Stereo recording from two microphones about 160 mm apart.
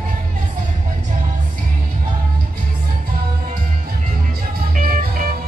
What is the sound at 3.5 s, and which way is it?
Music, 60° right (ahead or behind).